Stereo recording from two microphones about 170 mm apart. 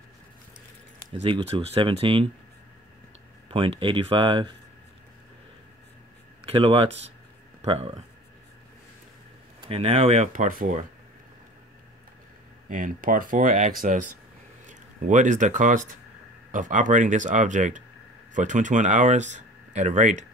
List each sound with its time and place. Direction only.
1.2 s speech: 35° right (ahead or behind)
3.4 s speech: 30° right (ahead or behind)
6.4 s speech: 30° right (ahead or behind)
9.6 s speech: 35° right (ahead or behind); by 10.9 s 50° right (ahead or behind)
12.6 s speech: 50° right (ahead or behind)